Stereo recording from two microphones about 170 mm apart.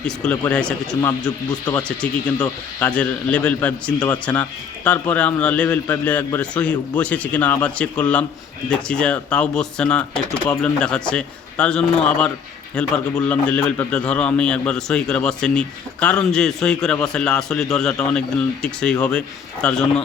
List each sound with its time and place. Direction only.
0.0 s a man's voice: 5° left (ahead or behind)
1.2 s speech: 25° left (ahead or behind)
2.0 s a man's voice: 5° left (ahead or behind)